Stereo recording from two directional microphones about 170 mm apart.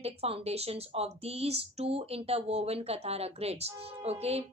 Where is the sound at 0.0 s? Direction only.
35° right (ahead or behind).